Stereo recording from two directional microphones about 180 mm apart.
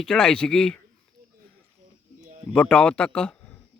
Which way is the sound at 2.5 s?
5° left (ahead or behind).